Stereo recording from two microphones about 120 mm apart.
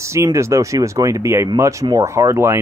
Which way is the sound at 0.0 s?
25° right (ahead or behind).